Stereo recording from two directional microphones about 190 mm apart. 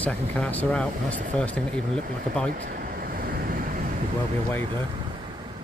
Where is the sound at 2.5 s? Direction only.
50° right (ahead or behind).